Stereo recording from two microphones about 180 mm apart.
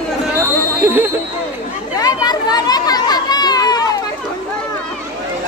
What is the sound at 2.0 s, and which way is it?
Chatter, 20° left (ahead or behind).